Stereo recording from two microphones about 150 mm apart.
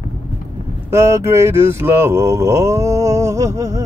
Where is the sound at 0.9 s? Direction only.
20° right (ahead or behind).